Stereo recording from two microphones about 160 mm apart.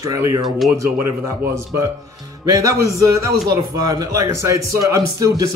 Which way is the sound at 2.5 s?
20° right (ahead or behind).